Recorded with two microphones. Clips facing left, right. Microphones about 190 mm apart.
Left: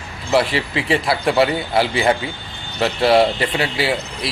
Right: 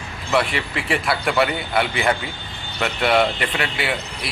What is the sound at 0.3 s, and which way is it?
A man's voice, 30° left (ahead or behind).